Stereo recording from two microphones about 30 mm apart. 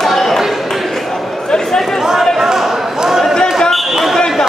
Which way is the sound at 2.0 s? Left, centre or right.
Centre.